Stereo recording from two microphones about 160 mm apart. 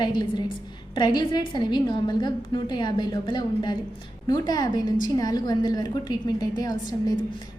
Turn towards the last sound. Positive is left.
turn(degrees=25)  # may be behind; listen again after turning